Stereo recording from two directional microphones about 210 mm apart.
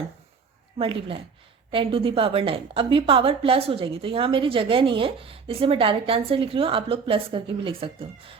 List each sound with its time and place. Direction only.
0.8 s a woman's voice: 25° right (ahead or behind)